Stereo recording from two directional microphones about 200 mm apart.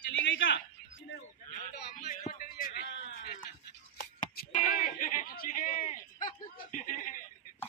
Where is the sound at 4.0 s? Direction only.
40° left (ahead or behind).